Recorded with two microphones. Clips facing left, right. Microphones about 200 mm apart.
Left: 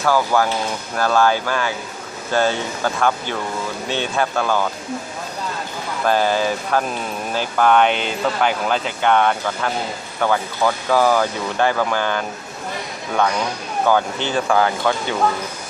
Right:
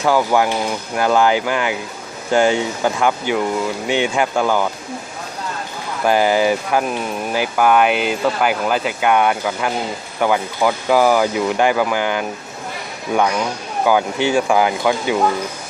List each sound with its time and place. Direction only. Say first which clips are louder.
0.0 s speech: right 2 dB; 15° right (ahead or behind)
6.1 s speech: right 3 dB; 15° right (ahead or behind)
13.8 s speech: right 3 dB; 10° right (ahead or behind)